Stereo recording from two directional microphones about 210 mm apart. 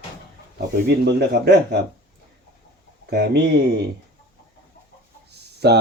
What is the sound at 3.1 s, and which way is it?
Speech, 50° right (ahead or behind).